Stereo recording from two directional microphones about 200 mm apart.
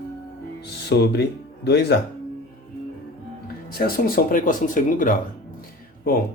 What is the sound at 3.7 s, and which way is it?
Speech, 45° left (ahead or behind).